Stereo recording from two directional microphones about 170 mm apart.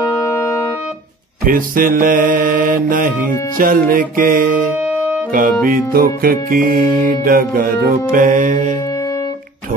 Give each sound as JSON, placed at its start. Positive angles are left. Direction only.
{"t": 0.0, "sound": "music", "side_deg": 15}
{"t": 1.4, "sound": "music", "side_deg": -55}